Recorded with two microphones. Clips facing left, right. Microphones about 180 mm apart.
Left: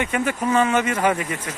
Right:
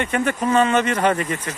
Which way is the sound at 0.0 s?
5° left (ahead or behind).